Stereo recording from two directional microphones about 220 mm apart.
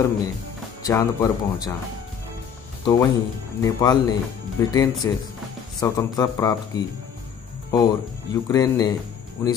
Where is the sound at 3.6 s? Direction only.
15° left (ahead or behind).